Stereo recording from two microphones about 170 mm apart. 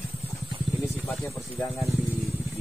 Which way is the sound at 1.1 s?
Centre (ahead or behind).